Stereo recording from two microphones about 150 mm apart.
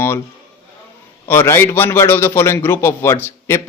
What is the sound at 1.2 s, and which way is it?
A man's voice, 15° left (ahead or behind).